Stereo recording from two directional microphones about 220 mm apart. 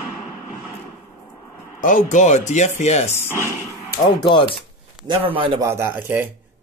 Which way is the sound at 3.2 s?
10° right (ahead or behind).